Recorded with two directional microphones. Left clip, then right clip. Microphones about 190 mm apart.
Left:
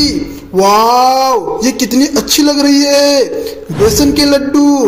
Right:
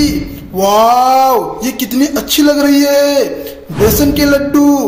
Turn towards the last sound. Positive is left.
turn(degrees=0)  # may be behind; listen again after turning